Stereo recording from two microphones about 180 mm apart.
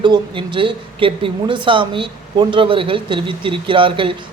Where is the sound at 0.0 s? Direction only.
25° right (ahead or behind).